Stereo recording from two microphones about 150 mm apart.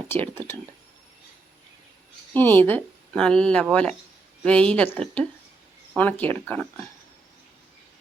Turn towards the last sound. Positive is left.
turn(degrees=10)  # may be behind; listen again after turning